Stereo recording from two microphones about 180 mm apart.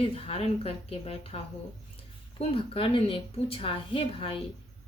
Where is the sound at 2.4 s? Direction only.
30° left (ahead or behind).